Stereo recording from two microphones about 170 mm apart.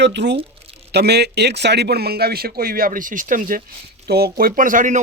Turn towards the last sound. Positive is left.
turn(degrees=-50)  # may be behind; listen again after turning